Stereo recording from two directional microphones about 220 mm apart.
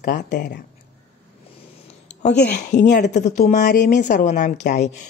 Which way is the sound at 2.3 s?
50° left (ahead or behind).